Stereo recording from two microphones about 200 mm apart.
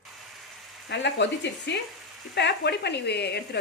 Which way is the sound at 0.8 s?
60° left (ahead or behind).